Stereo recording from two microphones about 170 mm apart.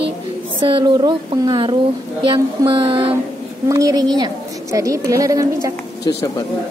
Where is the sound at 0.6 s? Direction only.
30° right (ahead or behind).